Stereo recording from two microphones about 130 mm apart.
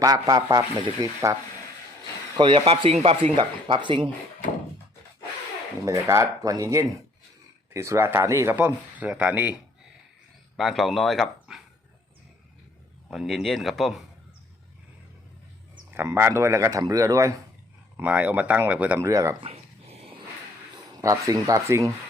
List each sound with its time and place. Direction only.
0.0 s speech: 30° right (ahead or behind)
2.3 s speech: 40° right (ahead or behind)
2.6 s speech: 50° right (ahead or behind)
3.3 s speech: 40° right (ahead or behind)
5.8 s speech: 25° right (ahead or behind)
10.6 s speech: centre (ahead or behind)
13.1 s speech: centre (ahead or behind)
15.9 s speech: 20° right (ahead or behind)
17.9 s speech: 10° right (ahead or behind)
19.0 s speech: 25° right (ahead or behind)
19.4 s dog: 50° right (ahead or behind)
21.0 s speech: 25° right (ahead or behind)